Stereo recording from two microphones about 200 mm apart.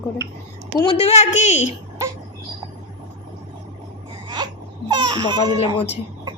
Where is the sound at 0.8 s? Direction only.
30° left (ahead or behind).